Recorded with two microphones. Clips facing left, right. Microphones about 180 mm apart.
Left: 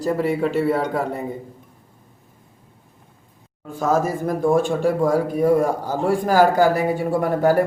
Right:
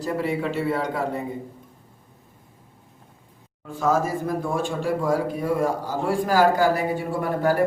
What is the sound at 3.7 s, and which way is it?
A man's voice, 45° left (ahead or behind).